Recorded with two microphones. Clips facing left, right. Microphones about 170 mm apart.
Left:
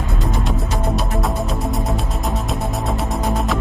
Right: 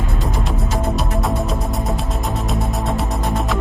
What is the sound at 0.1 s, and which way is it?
Music, centre (ahead or behind).